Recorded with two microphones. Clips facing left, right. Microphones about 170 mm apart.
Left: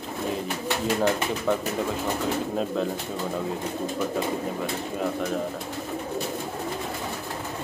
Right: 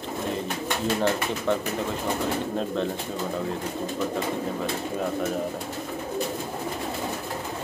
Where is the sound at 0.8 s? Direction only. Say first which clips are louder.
Left 1 dB; 10° left (ahead or behind).